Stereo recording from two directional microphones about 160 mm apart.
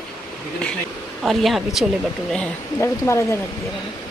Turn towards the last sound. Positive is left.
turn(degrees=15)  # may be behind; listen again after turning